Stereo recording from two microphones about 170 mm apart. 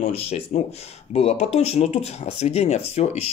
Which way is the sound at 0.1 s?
35° left (ahead or behind).